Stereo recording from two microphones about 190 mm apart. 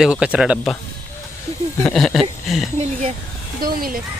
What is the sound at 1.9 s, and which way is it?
Speech, centre (ahead or behind).